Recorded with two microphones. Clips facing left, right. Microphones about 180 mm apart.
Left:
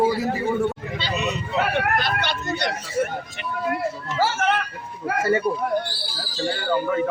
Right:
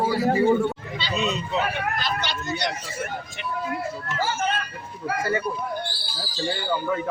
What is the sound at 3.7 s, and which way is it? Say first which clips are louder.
Speech: left 3 dB; 80° left.